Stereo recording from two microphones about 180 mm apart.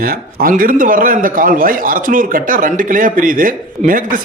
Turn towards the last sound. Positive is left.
turn(degrees=-50)  # may be behind; listen again after turning